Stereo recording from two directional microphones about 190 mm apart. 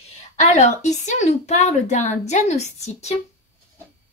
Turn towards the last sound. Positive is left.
turn(degrees=35)  # may be behind; listen again after turning